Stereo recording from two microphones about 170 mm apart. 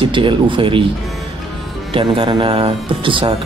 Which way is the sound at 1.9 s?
30° right (ahead or behind).